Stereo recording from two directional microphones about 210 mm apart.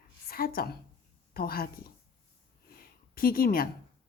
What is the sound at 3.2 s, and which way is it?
Speech, 45° left (ahead or behind).